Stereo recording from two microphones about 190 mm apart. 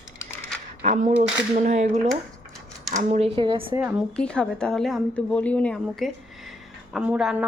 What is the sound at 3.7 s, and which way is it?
Speech, 5° right (ahead or behind).